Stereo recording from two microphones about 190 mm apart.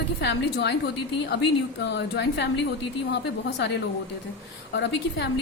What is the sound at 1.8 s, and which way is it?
A woman's voice, 65° left (ahead or behind).